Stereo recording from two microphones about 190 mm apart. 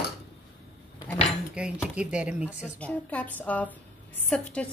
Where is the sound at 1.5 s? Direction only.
5° right (ahead or behind).